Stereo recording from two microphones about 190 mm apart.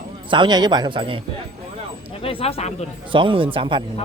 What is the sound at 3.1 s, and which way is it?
Speech, 25° right (ahead or behind).